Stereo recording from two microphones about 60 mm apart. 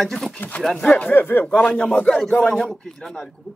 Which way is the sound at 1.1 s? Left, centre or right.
Left.